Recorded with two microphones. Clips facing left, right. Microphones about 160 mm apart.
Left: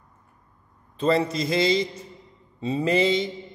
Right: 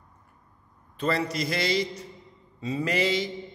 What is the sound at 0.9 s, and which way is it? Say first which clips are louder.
A man's voice: left 5 dB; 25° left (ahead or behind).